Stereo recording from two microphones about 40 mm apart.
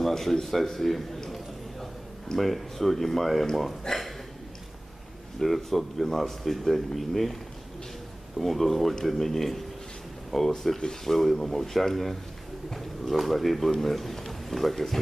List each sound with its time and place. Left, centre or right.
0.0 s a man's voice: centre
2.4 s a man's voice: centre
5.4 s speech: centre
8.4 s speech: centre